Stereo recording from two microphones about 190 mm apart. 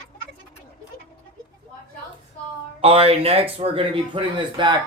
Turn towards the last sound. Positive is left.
turn(degrees=-25)  # may be behind; listen again after turning